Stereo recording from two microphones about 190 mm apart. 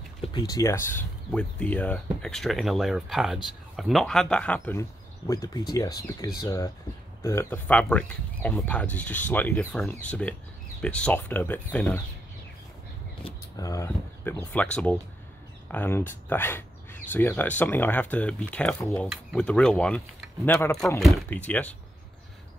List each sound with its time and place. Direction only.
0.2 s speech: 20° left (ahead or behind)
13.2 s speech: 20° left (ahead or behind)